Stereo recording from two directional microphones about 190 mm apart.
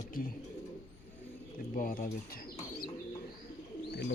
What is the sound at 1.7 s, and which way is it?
Speech, 45° left (ahead or behind).